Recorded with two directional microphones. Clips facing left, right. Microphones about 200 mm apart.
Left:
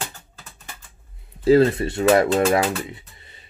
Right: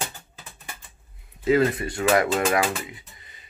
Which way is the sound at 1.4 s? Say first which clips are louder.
Left 5 dB; 30° left (ahead or behind).